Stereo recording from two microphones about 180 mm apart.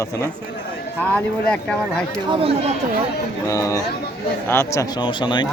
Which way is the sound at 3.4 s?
15° left (ahead or behind).